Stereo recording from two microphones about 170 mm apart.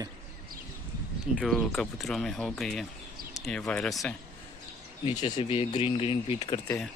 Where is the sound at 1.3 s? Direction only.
Centre (ahead or behind).